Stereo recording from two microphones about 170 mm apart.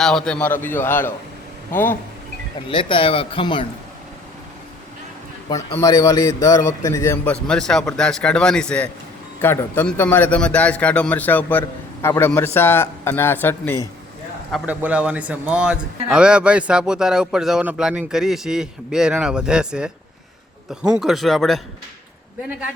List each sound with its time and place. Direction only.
0.0 s a man's voice: 5° left (ahead or behind)
2.6 s speech: 30° left (ahead or behind)
5.5 s a man's voice: 20° left (ahead or behind)
7.4 s a man's voice: 5° left (ahead or behind)
14.5 s a man's voice: 10° right (ahead or behind)
21.0 s a man's voice: centre (ahead or behind)